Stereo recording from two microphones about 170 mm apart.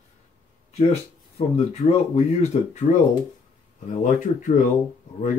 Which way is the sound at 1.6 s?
40° left (ahead or behind).